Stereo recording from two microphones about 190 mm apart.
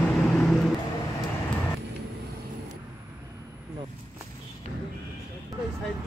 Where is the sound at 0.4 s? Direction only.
Centre (ahead or behind).